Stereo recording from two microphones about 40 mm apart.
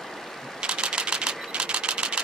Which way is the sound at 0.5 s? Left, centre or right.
Right.